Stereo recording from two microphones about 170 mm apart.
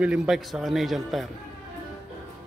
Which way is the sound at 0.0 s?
5° right (ahead or behind).